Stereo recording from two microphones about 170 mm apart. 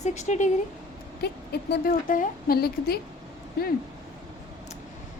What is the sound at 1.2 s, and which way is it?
Speech, 75° left (ahead or behind).